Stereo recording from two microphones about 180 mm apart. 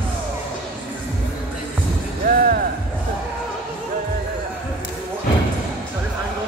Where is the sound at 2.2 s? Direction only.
50° right (ahead or behind).